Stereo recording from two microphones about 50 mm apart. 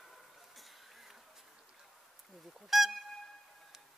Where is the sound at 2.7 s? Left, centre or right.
Centre.